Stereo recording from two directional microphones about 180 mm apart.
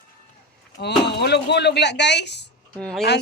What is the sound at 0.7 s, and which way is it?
Speech, 70° left (ahead or behind).